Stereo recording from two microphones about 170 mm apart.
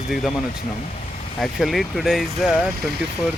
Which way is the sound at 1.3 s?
Centre (ahead or behind).